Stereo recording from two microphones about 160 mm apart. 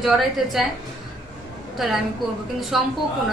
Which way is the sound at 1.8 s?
Centre (ahead or behind).